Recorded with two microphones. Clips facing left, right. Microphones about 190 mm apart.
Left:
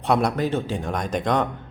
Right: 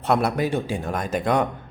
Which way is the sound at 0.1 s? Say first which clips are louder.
Even; 5° right (ahead or behind).